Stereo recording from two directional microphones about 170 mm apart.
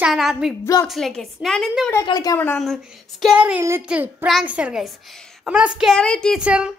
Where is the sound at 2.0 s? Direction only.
20° left (ahead or behind).